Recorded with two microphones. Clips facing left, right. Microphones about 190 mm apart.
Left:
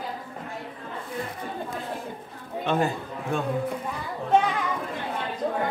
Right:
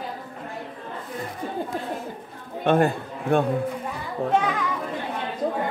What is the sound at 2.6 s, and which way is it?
Speech, 55° right (ahead or behind).